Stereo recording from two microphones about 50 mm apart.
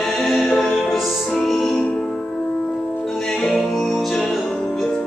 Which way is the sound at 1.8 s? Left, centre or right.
Centre.